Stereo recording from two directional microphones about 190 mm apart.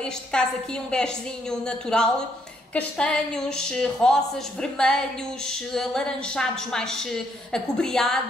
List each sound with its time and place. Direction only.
0.0 s a woman's voice: 5° left (ahead or behind)